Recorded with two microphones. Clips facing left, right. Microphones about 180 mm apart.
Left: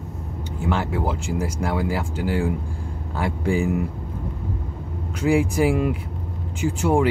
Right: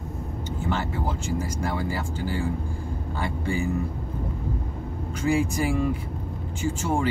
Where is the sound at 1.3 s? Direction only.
80° left.